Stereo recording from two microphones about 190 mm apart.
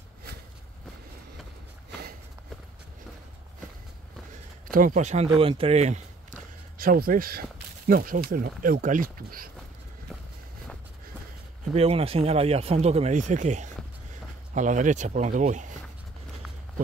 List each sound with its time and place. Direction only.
4.7 s speech: 40° right (ahead or behind)
6.8 s speech: 50° right (ahead or behind)
11.7 s speech: 30° right (ahead or behind)